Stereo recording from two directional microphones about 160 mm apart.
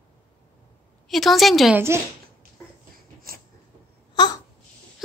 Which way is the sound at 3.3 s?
65° right (ahead or behind).